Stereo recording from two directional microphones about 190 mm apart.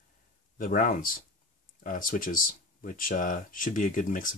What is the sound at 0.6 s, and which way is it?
Speech, 45° left (ahead or behind).